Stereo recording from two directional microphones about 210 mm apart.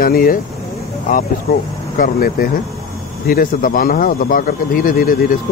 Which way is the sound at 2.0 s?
45° left (ahead or behind).